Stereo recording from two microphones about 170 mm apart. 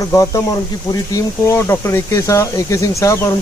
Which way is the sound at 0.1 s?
20° left (ahead or behind).